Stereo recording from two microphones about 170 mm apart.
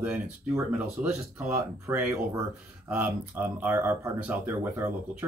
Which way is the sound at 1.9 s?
15° right (ahead or behind).